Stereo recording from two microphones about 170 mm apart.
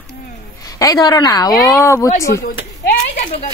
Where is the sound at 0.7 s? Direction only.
20° left (ahead or behind).